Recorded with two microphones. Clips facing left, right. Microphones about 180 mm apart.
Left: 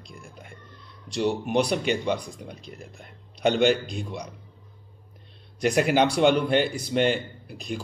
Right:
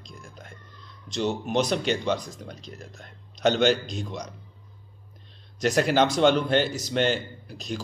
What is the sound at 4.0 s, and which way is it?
Speech, 10° left (ahead or behind).